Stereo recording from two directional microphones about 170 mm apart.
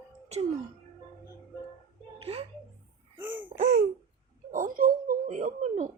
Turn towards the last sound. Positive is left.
turn(degrees=-45)  # may be behind; listen again after turning